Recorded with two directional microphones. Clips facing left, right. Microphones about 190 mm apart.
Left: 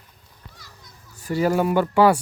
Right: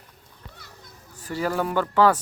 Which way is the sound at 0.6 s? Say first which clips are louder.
Right 1 dB; 60° right (ahead or behind).